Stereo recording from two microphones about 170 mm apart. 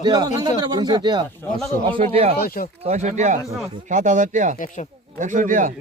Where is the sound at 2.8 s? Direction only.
40° right (ahead or behind).